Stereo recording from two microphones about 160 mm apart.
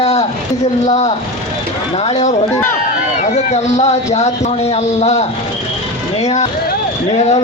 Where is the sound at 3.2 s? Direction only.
45° left (ahead or behind).